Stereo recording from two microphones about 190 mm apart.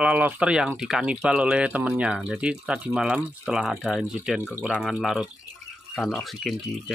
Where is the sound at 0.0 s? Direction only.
5° right (ahead or behind).